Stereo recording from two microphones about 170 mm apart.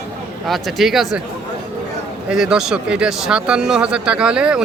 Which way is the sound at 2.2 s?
5° right (ahead or behind).